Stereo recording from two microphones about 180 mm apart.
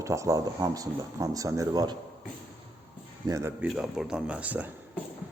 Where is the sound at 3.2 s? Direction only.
15° right (ahead or behind).